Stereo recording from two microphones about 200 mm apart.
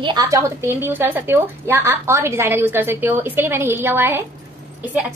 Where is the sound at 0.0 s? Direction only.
20° right (ahead or behind).